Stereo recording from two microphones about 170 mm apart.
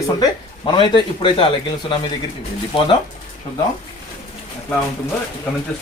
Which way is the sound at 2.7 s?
30° left (ahead or behind).